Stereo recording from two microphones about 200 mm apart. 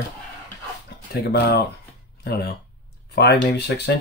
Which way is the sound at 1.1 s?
55° left (ahead or behind).